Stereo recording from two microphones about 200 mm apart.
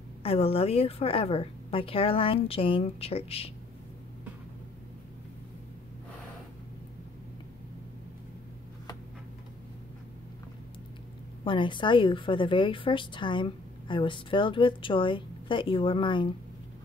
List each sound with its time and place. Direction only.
0.2 s a woman's voice: 30° left (ahead or behind)
11.4 s a woman's voice: 25° left (ahead or behind)